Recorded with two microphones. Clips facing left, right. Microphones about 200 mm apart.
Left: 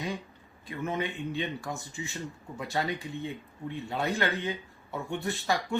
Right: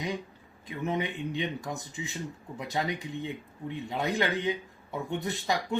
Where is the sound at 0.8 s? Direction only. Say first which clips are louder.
Right 1 dB; 20° right (ahead or behind).